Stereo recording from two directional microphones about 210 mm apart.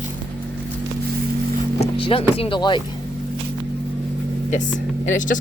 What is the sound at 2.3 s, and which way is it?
Speech, 25° left (ahead or behind).